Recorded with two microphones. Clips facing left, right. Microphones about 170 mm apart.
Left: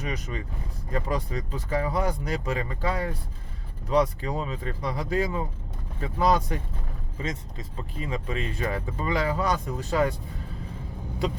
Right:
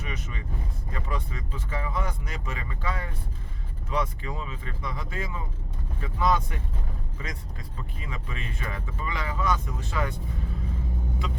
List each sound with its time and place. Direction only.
0.0 s speech: 35° left (ahead or behind)
7.8 s speech: 30° left (ahead or behind)